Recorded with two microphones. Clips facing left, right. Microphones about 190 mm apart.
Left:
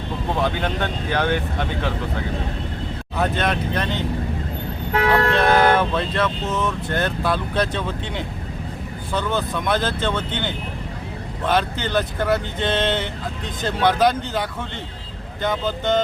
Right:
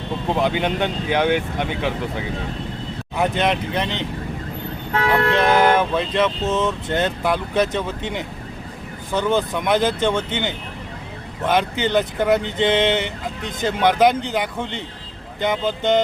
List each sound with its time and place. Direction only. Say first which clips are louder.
0.3 s speech: right 3 dB; 15° right (ahead or behind)
5.1 s speech: right 1 dB; 15° right (ahead or behind)